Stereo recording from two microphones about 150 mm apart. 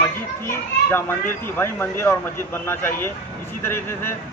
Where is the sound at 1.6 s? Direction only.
15° left (ahead or behind).